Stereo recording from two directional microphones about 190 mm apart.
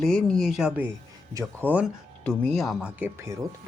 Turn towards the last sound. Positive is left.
turn(degrees=-15)  # may be behind; listen again after turning